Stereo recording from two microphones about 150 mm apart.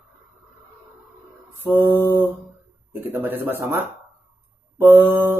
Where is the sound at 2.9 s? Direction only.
15° right (ahead or behind).